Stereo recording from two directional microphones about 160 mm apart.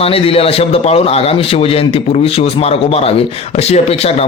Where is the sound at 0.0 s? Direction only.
35° left (ahead or behind).